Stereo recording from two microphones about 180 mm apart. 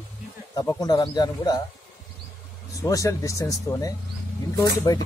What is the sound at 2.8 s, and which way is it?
Speech, 20° left (ahead or behind).